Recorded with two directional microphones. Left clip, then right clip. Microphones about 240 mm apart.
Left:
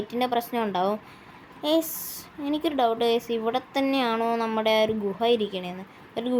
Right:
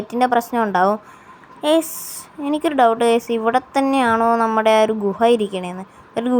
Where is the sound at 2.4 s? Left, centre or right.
Centre.